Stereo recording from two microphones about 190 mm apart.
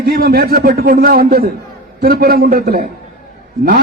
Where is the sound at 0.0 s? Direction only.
50° right (ahead or behind).